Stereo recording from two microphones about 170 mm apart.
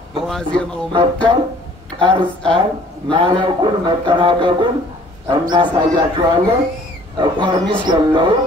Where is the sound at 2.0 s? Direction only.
5° left (ahead or behind).